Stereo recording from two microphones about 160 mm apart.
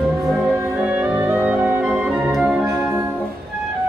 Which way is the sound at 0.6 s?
10° right (ahead or behind).